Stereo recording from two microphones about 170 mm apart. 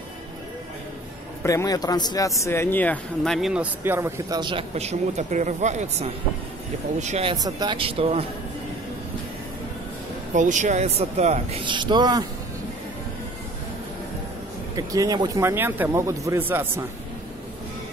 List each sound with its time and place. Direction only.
1.4 s speech: 20° left (ahead or behind)
3.3 s speech: centre (ahead or behind)
3.8 s speech: 15° right (ahead or behind); by 7.3 s 40° right (ahead or behind)
7.4 s speech: 30° right (ahead or behind)
10.3 s speech: 45° right (ahead or behind)
11.6 s speech: 25° right (ahead or behind)
14.8 s speech: 20° right (ahead or behind)